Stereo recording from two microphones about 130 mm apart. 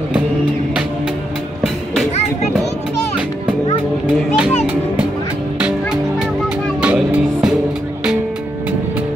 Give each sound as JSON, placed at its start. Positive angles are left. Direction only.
{"t": 5.6, "sound": "music", "side_deg": -5}